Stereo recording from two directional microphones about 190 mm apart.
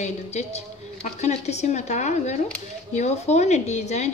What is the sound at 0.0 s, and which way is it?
A woman's voice, 35° left (ahead or behind).